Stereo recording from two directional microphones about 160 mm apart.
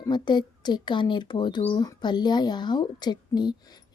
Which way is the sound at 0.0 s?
25° left (ahead or behind).